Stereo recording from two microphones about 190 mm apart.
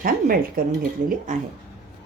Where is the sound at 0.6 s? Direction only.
50° right (ahead or behind).